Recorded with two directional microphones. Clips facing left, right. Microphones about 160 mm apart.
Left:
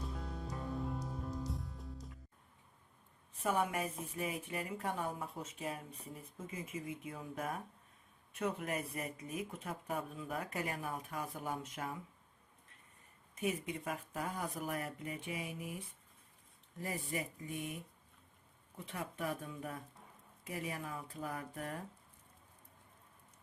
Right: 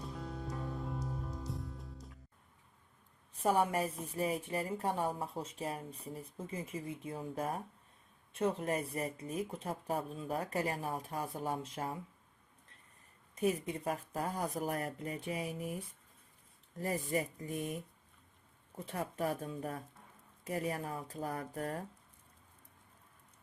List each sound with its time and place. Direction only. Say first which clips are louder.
0.0 s music: right 2 dB; centre (ahead or behind)
3.4 s speech: right 4 dB; 35° right (ahead or behind)
13.3 s speech: right 4 dB; 35° right (ahead or behind)
16.7 s speech: right 6 dB; 40° right (ahead or behind)
18.9 s speech: right 4 dB; 40° right (ahead or behind)